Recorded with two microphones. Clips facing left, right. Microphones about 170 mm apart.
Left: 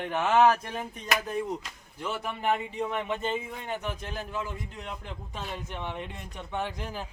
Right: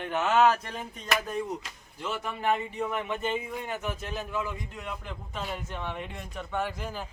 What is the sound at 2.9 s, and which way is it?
Speech, 25° left (ahead or behind).